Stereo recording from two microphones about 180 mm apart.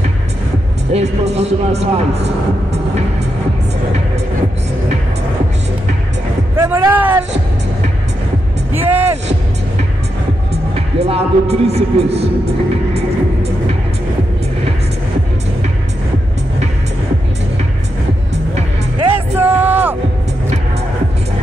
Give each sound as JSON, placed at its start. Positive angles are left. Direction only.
{"t": 0.9, "sound": "speech", "side_deg": -35}
{"t": 6.5, "sound": "speech", "side_deg": -15}
{"t": 8.7, "sound": "speech", "side_deg": -10}
{"t": 10.5, "sound": "speech", "side_deg": -35}
{"t": 18.3, "sound": "music", "side_deg": -35}
{"t": 19.1, "sound": "music", "side_deg": -10}